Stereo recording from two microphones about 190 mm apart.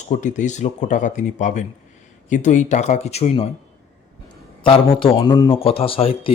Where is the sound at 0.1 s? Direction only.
40° left (ahead or behind).